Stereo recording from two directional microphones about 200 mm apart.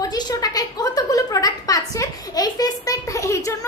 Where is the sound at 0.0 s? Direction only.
20° left (ahead or behind).